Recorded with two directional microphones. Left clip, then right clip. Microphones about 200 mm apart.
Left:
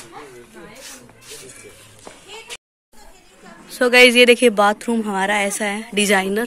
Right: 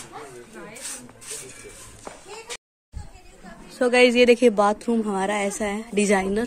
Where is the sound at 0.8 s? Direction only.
45° right (ahead or behind).